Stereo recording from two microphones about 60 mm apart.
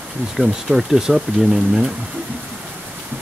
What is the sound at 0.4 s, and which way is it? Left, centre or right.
Speech, centre.